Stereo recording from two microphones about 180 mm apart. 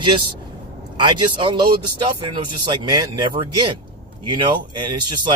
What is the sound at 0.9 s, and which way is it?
Speech, 25° right (ahead or behind).